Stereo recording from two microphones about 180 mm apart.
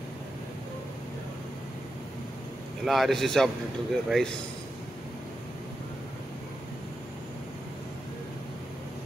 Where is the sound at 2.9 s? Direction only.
Centre (ahead or behind).